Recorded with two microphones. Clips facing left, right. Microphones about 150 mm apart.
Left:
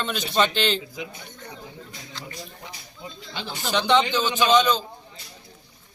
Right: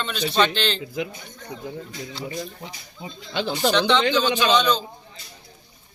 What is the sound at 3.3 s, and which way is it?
Speech, 80° right.